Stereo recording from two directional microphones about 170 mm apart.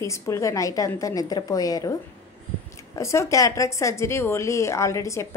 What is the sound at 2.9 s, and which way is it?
A woman's voice, 15° left (ahead or behind).